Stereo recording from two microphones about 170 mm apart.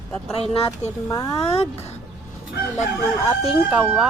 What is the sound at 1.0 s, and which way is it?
Speech, 20° left (ahead or behind).